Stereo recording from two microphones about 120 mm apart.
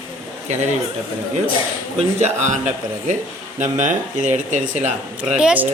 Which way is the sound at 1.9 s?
75° right (ahead or behind).